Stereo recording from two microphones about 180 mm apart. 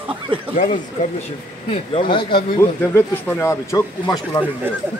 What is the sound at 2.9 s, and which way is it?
Speech, 15° left (ahead or behind).